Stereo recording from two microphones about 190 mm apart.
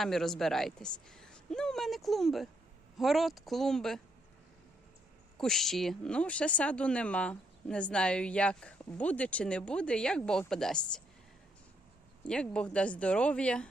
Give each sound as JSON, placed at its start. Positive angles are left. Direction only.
{"t": 0.0, "sound": "speech", "side_deg": 0}
{"t": 5.4, "sound": "speech", "side_deg": 0}
{"t": 12.3, "sound": "speech", "side_deg": 5}